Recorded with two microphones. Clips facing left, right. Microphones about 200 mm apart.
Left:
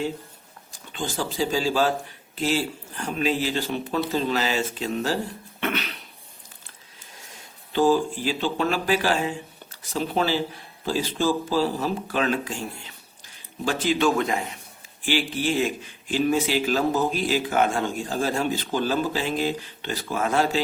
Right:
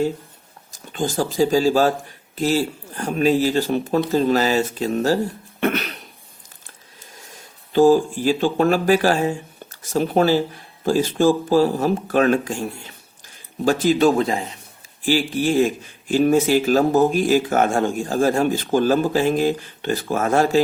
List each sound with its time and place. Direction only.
0.7 s speech: 45° right (ahead or behind)
7.7 s speech: 45° right (ahead or behind)
15.0 s speech: 45° right (ahead or behind)